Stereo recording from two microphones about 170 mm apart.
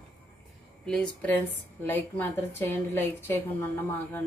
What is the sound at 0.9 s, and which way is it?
A woman's voice, 5° left (ahead or behind).